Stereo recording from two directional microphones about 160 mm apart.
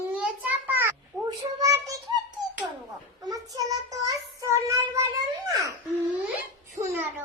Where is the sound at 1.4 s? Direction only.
20° right (ahead or behind).